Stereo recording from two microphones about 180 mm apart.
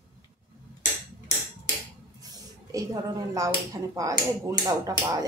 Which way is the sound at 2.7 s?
20° right (ahead or behind).